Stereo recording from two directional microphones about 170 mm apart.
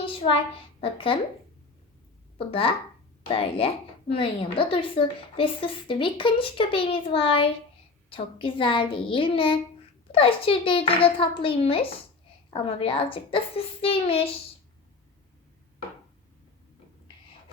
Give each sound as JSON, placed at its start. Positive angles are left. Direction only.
{"t": 0.0, "sound": "a woman's voice", "side_deg": 30}
{"t": 2.5, "sound": "a woman's voice", "side_deg": 35}